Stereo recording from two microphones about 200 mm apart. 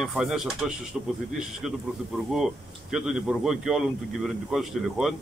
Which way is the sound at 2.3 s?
Centre (ahead or behind).